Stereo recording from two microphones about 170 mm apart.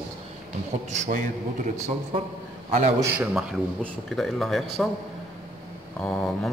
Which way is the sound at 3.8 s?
Centre (ahead or behind).